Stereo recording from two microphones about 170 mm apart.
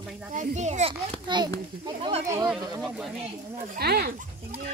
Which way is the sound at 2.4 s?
5° right (ahead or behind).